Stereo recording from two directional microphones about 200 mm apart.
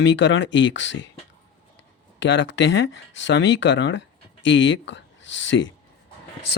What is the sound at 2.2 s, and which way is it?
Speech, 65° left (ahead or behind).